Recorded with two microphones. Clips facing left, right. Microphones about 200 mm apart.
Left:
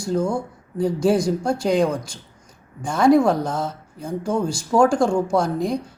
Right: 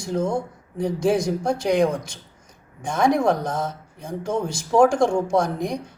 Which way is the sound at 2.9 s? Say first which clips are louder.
Left 4 dB; 20° right (ahead or behind).